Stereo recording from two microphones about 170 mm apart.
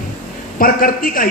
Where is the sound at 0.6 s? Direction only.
55° left (ahead or behind).